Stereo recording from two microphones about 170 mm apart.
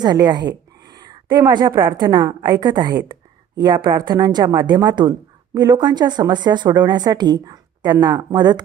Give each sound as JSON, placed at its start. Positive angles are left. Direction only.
{"t": 0.0, "sound": "a woman's voice", "side_deg": -25}